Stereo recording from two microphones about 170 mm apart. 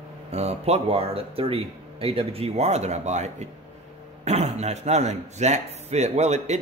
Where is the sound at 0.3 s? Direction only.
40° right (ahead or behind).